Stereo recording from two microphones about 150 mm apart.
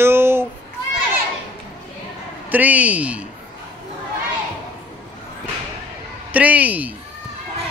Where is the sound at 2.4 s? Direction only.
10° right (ahead or behind).